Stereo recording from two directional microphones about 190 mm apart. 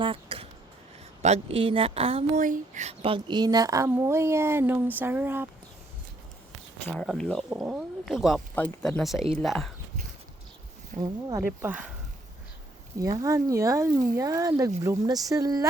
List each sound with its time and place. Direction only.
0.0 s a sound: 30° right (ahead or behind)
1.2 s speech: 35° right (ahead or behind); by 5.5 s 10° right (ahead or behind)
6.8 s speech: centre (ahead or behind)
11.0 s speech: 15° right (ahead or behind)
13.0 s speech: 20° right (ahead or behind)